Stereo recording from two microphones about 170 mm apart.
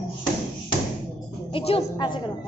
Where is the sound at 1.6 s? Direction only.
35° left (ahead or behind).